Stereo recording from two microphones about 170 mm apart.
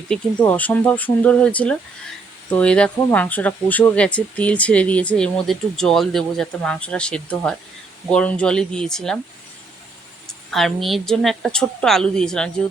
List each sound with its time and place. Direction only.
0.1 s a woman's voice: 10° left (ahead or behind)
10.2 s a woman's voice: centre (ahead or behind)